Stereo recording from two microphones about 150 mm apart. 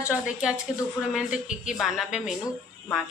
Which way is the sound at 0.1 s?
5° right (ahead or behind).